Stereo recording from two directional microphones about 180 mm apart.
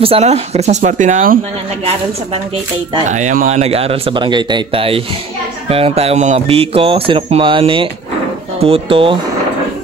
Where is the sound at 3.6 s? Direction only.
35° right (ahead or behind).